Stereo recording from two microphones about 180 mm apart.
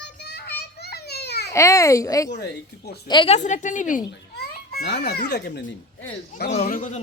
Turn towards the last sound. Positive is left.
turn(degrees=45)  # may be behind; listen again after turning